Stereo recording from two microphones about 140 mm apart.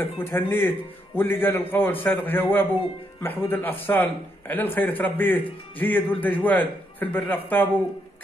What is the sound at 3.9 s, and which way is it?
Speech, 15° left (ahead or behind).